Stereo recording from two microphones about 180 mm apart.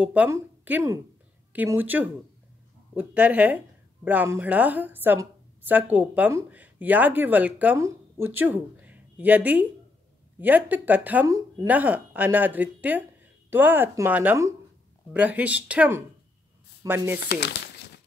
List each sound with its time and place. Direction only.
0.0 s speech: 10° right (ahead or behind)
17.2 s crumpling: 65° left (ahead or behind)